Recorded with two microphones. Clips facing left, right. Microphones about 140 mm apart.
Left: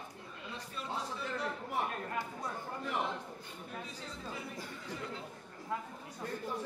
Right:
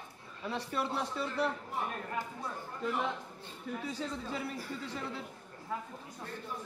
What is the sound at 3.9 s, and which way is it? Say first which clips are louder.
Speech: right 7 dB; 80° right.